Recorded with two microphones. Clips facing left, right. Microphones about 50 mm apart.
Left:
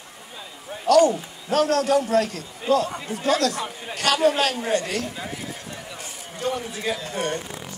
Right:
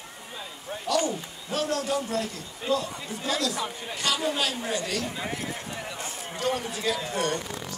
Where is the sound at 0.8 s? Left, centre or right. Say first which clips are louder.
Left 10 dB; left.